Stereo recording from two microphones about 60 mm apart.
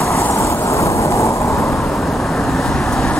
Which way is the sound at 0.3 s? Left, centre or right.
Left.